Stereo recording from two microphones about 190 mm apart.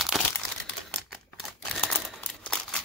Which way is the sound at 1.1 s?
Centre (ahead or behind).